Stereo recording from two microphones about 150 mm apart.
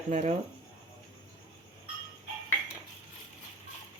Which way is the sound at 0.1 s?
55° right (ahead or behind).